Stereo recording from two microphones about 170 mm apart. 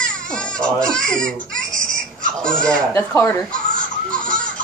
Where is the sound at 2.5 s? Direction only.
5° left (ahead or behind).